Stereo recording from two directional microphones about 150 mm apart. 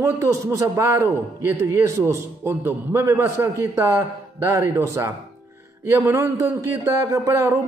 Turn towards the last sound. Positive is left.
turn(degrees=-20)  # may be behind; listen again after turning